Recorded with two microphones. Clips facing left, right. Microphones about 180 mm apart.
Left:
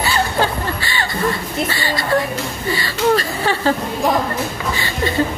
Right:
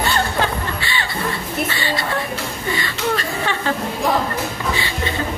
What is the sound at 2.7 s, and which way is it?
Chuckle, 35° left (ahead or behind).